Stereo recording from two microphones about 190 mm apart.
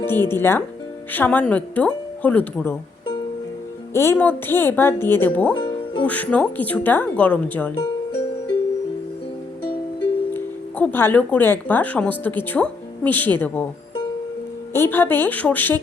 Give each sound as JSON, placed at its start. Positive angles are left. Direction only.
{"t": 0.0, "sound": "speech", "side_deg": 10}
{"t": 3.9, "sound": "speech", "side_deg": 15}
{"t": 5.5, "sound": "music", "side_deg": 25}
{"t": 6.0, "sound": "speech", "side_deg": 5}
{"t": 10.3, "sound": "speech", "side_deg": 10}
{"t": 14.7, "sound": "speech", "side_deg": 10}